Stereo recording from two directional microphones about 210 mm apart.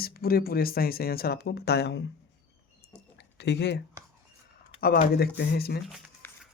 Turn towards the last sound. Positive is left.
turn(degrees=0)  # may be behind; listen again after turning